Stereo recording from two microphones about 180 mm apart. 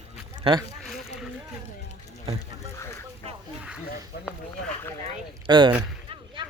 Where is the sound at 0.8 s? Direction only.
Centre (ahead or behind).